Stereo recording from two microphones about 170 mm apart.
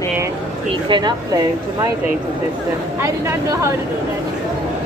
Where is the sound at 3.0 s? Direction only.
15° right (ahead or behind).